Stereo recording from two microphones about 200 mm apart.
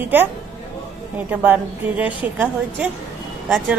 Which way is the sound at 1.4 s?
10° right (ahead or behind).